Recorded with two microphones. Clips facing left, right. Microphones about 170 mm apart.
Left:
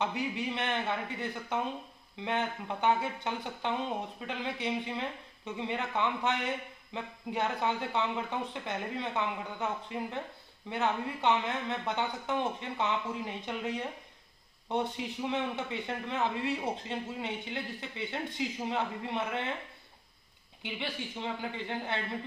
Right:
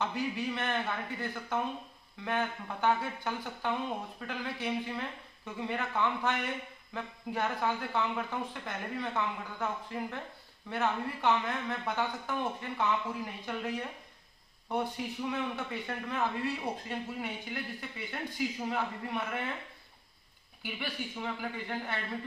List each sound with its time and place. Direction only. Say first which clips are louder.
0.0 s speech: even; 20° left (ahead or behind)
20.6 s speech: left 1 dB; 25° left (ahead or behind)